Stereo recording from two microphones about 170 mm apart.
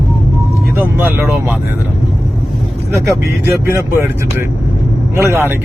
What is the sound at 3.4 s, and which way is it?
Speech, 15° right (ahead or behind).